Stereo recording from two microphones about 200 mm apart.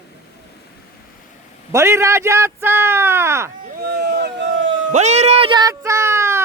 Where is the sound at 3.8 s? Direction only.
50° right (ahead or behind).